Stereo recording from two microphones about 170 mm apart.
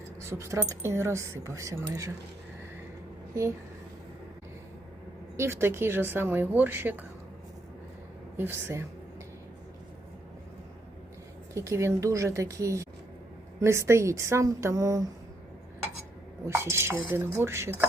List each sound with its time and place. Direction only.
0.2 s speech: 15° right (ahead or behind)
5.4 s speech: 15° right (ahead or behind)
8.4 s speech: 15° right (ahead or behind)
11.5 s speech: 15° right (ahead or behind)
16.5 s speech: 15° right (ahead or behind)